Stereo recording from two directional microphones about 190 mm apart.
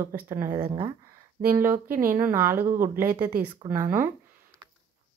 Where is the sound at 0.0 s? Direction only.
10° right (ahead or behind).